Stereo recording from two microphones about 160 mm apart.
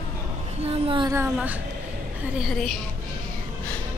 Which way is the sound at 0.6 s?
35° right (ahead or behind).